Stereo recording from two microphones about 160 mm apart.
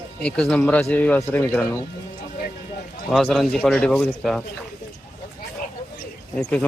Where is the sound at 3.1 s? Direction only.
Centre (ahead or behind).